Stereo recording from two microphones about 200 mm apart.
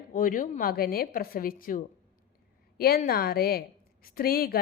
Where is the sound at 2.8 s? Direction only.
50° left (ahead or behind).